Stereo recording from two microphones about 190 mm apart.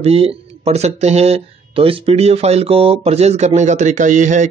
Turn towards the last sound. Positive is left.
turn(degrees=-40)  # may be behind; listen again after turning